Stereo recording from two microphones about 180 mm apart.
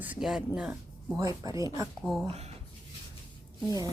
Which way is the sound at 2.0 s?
Centre (ahead or behind).